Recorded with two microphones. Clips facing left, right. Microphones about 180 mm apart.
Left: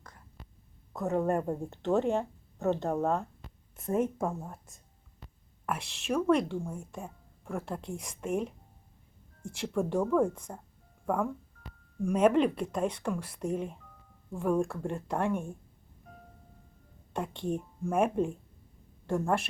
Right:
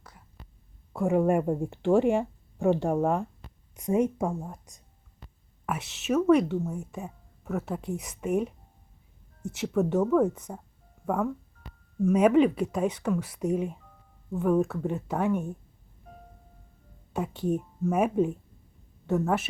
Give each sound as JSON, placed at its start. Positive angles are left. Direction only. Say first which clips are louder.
{"t": 0.0, "sound": "whispering", "louder": "right 1 dB", "side_deg": -5}
{"t": 0.9, "sound": "speech", "louder": "right 5 dB", "side_deg": -10}
{"t": 5.2, "sound": "speech", "louder": "right 2 dB", "side_deg": -5}
{"t": 17.2, "sound": "a woman's voice", "louder": "right 4 dB", "side_deg": -5}